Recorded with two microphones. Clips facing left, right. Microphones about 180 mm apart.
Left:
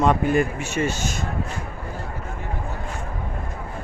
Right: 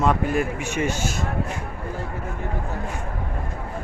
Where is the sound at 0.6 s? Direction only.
15° right (ahead or behind).